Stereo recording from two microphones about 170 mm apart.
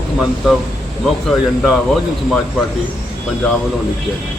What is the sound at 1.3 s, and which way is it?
Speech, centre (ahead or behind).